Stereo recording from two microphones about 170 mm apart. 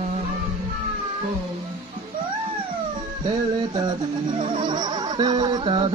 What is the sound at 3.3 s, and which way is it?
Music, 25° right (ahead or behind).